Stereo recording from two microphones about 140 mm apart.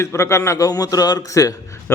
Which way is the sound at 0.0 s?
20° left (ahead or behind).